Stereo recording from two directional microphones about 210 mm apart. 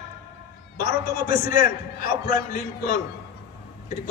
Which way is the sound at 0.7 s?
45° left (ahead or behind).